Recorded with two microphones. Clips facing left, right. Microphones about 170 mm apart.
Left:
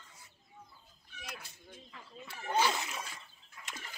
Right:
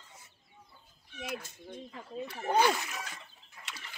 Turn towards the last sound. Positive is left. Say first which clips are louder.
# left 1 dB
turn(degrees=50)  # may be behind; listen again after turning